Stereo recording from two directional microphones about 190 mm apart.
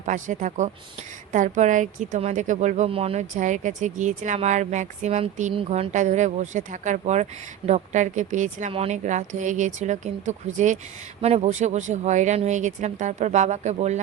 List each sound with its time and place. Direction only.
0.0 s a woman's voice: 40° right (ahead or behind)